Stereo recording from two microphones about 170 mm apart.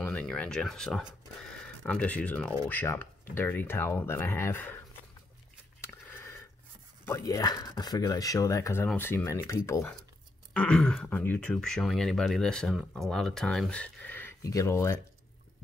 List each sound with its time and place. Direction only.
0.0 s speech: 5° left (ahead or behind)
5.8 s a sound: 15° left (ahead or behind)
7.1 s speech: 20° left (ahead or behind)
10.5 s speech: 5° left (ahead or behind)